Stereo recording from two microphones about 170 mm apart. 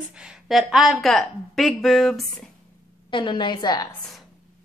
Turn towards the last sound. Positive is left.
turn(degrees=25)  # may be behind; listen again after turning